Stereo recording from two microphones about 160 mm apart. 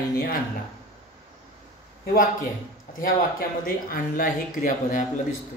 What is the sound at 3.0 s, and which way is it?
A man's voice, 65° left (ahead or behind).